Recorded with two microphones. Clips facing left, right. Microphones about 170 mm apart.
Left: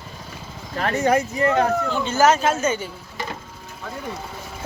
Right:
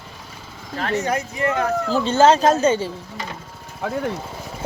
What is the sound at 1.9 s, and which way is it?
Speech, 30° right (ahead or behind).